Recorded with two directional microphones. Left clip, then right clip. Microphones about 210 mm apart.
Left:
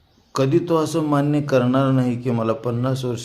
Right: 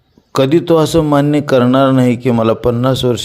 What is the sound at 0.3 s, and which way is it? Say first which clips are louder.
A man's voice: right 8 dB; 35° right (ahead or behind).